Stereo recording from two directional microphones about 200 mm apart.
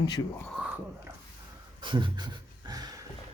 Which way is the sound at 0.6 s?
5° right (ahead or behind).